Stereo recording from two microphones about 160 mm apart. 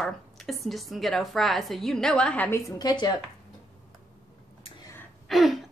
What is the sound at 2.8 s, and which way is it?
Speech, 25° left (ahead or behind).